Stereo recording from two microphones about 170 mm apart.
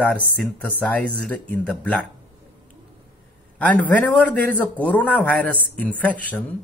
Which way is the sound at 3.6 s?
10° left (ahead or behind).